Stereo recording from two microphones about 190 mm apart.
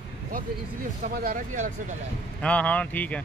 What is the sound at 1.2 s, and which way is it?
Speech, 40° right (ahead or behind).